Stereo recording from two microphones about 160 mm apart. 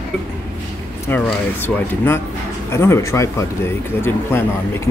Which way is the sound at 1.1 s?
10° left (ahead or behind).